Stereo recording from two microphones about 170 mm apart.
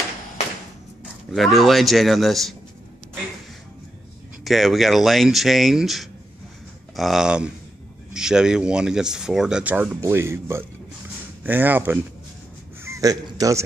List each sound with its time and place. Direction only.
1.3 s speech: centre (ahead or behind)
4.5 s speech: centre (ahead or behind)
12.8 s a sound: 20° right (ahead or behind)